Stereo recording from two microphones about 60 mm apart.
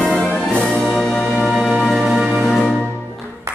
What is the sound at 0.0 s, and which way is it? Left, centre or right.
Music, centre.